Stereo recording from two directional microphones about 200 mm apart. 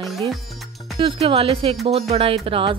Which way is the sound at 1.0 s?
30° right (ahead or behind).